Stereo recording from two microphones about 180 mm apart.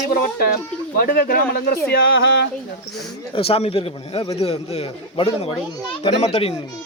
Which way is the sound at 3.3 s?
30° left (ahead or behind).